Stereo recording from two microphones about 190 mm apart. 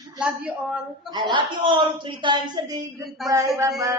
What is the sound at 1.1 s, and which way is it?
Speech, 25° right (ahead or behind).